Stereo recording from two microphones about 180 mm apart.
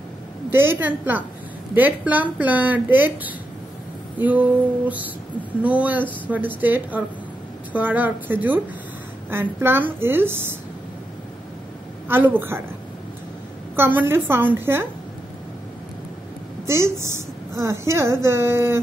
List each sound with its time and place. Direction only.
0.5 s a woman's voice: 10° right (ahead or behind)
12.1 s a woman's voice: 10° right (ahead or behind)
13.7 s a woman's voice: 10° right (ahead or behind)
16.6 s a woman's voice: 15° right (ahead or behind)